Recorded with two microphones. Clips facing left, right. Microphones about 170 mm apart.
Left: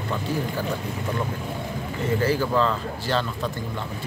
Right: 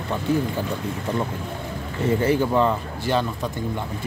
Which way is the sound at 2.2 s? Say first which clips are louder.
Right 2 dB; 20° right (ahead or behind).